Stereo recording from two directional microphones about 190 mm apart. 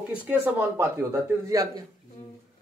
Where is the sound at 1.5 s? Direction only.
15° right (ahead or behind).